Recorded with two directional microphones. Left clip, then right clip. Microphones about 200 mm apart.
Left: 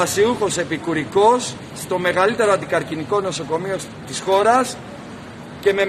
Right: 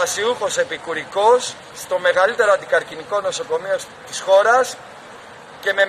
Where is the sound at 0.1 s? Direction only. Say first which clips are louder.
Left 2 dB; centre (ahead or behind).